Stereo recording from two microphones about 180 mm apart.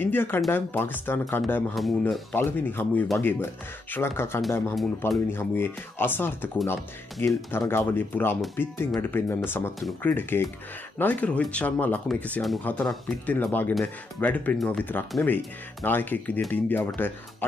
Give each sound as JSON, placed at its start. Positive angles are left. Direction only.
{"t": 0.0, "sound": "speech", "side_deg": 10}
{"t": 1.8, "sound": "speech", "side_deg": 0}
{"t": 2.3, "sound": "speech", "side_deg": 10}